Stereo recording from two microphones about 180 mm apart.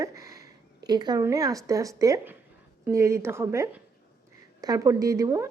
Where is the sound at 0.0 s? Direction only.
20° right (ahead or behind).